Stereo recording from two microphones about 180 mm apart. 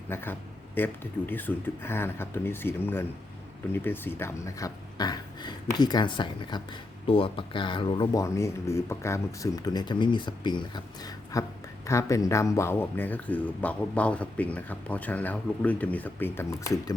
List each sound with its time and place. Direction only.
0.1 s speech: 10° left (ahead or behind)